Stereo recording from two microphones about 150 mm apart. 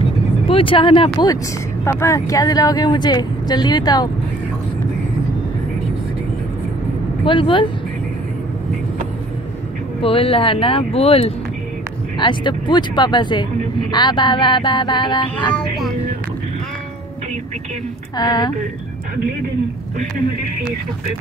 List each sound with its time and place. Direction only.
0.5 s music: 35° left (ahead or behind)
1.9 s speech: 20° left (ahead or behind)
7.2 s music: 35° left (ahead or behind)
10.0 s music: 35° left (ahead or behind)
12.2 s music: 30° left (ahead or behind)
18.1 s speech: 30° left (ahead or behind)